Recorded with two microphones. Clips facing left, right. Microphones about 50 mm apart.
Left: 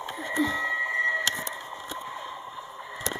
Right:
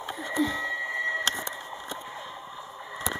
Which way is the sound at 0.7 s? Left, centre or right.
Left.